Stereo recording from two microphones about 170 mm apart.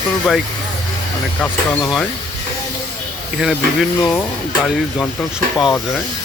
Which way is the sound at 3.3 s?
Centre (ahead or behind).